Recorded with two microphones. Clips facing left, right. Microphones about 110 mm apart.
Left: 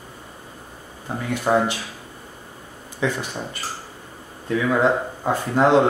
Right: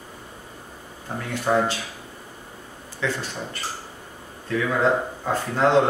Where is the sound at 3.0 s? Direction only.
15° left (ahead or behind).